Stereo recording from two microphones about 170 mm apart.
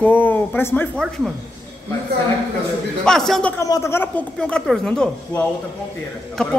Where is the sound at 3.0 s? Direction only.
Centre (ahead or behind).